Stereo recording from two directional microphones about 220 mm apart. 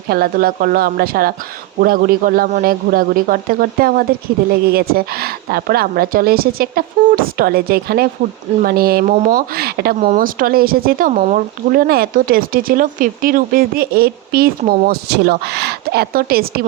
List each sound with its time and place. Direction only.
0.1 s speech: 40° right (ahead or behind)